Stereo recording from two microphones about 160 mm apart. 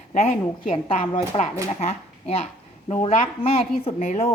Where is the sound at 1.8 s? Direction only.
40° left (ahead or behind).